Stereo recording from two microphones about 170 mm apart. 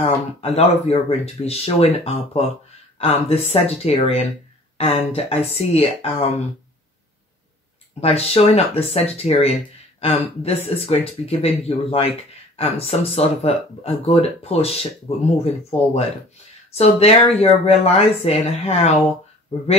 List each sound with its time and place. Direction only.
0.0 s speech: 35° left (ahead or behind)
8.0 s speech: 35° left (ahead or behind)